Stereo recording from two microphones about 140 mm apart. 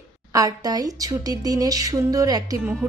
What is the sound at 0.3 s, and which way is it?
Speech, 25° right (ahead or behind).